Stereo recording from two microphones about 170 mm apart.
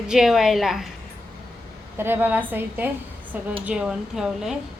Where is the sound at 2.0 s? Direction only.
10° right (ahead or behind).